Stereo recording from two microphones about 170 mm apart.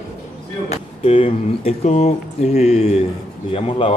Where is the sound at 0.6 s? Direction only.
35° left (ahead or behind).